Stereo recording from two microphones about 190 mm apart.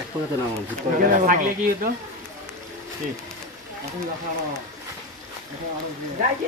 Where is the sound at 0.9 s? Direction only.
45° right (ahead or behind).